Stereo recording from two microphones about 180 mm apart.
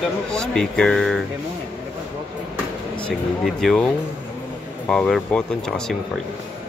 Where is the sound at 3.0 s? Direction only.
Centre (ahead or behind).